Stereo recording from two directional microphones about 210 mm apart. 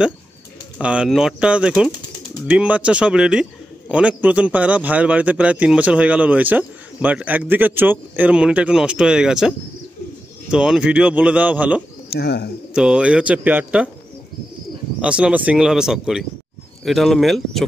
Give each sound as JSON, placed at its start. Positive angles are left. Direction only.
{"t": 0.7, "sound": "a man's voice", "side_deg": -5}
{"t": 10.5, "sound": "a man's voice", "side_deg": -5}
{"t": 12.1, "sound": "speech", "side_deg": 50}
{"t": 12.7, "sound": "speech", "side_deg": -5}
{"t": 15.0, "sound": "speech", "side_deg": -5}